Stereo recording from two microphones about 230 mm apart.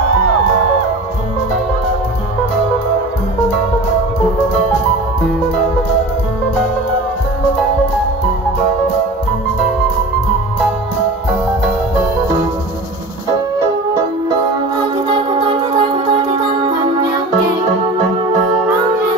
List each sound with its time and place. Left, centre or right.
14.8 s music: right